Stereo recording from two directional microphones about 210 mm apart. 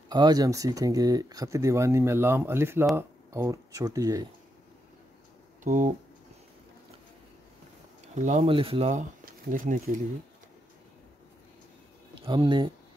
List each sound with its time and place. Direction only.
0.1 s speech: 20° right (ahead or behind)
5.6 s speech: 35° right (ahead or behind)
8.1 s speech: 35° right (ahead or behind)
12.2 s speech: 20° right (ahead or behind)